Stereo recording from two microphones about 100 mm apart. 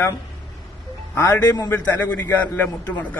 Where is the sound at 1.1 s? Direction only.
30° left (ahead or behind).